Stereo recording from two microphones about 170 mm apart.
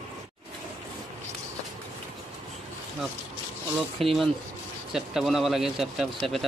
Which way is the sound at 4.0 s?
Centre (ahead or behind).